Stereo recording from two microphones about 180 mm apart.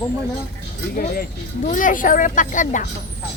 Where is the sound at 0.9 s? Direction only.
55° left (ahead or behind).